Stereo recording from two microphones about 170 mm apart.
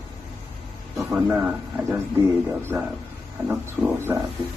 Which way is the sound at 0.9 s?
10° right (ahead or behind).